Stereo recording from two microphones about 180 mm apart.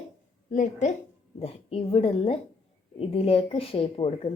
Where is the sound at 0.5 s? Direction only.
45° left (ahead or behind).